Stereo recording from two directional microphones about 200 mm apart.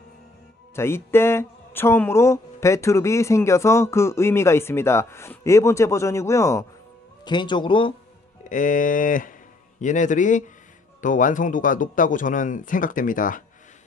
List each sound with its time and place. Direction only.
0.7 s speech: 10° left (ahead or behind)
8.5 s speech: 40° left (ahead or behind)